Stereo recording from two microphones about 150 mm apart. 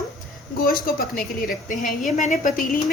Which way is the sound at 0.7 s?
75° left (ahead or behind).